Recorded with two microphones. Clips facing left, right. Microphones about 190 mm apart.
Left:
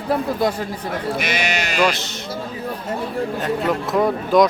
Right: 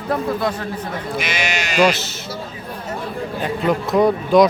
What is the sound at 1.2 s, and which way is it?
Speech, 55° left (ahead or behind).